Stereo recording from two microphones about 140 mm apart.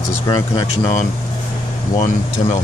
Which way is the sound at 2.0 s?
60° left (ahead or behind).